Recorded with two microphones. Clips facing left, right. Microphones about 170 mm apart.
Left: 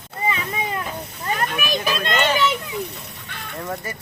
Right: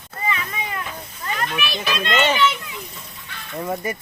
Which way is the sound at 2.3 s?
40° left (ahead or behind).